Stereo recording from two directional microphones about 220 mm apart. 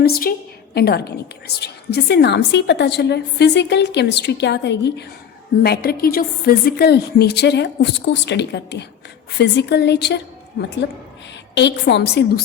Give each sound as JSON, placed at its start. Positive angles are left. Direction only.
{"t": 0.0, "sound": "a woman's voice", "side_deg": 45}
{"t": 11.5, "sound": "a woman's voice", "side_deg": 50}